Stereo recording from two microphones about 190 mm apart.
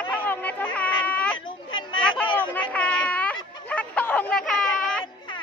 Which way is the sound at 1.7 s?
25° left (ahead or behind).